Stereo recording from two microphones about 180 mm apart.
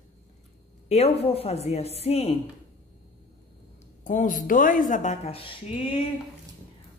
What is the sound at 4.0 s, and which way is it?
A woman's voice, 45° left (ahead or behind).